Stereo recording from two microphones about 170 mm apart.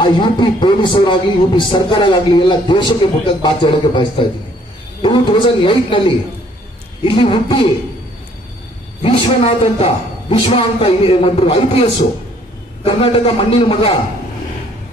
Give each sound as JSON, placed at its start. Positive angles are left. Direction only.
{"t": 0.0, "sound": "a man's voice", "side_deg": 30}
{"t": 9.0, "sound": "a man's voice", "side_deg": 35}